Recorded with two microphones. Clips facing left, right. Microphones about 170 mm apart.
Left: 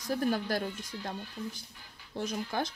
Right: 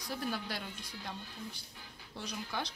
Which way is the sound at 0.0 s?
45° left (ahead or behind).